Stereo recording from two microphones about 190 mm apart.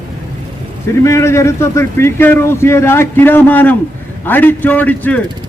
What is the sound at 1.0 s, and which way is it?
Speech, 15° left (ahead or behind).